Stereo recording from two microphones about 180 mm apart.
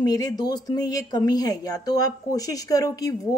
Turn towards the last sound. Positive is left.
turn(degrees=20)  # may be behind; listen again after turning